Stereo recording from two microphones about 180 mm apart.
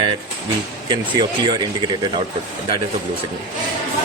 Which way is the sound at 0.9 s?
25° right (ahead or behind).